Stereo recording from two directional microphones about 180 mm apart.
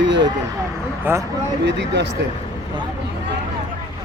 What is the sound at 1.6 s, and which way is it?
Speech, 75° right (ahead or behind).